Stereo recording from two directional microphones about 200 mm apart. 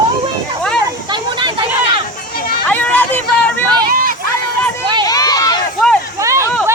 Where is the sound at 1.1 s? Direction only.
25° right (ahead or behind).